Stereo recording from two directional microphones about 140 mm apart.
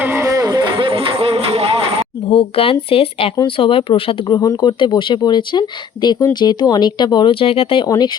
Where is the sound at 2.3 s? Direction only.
40° left (ahead or behind).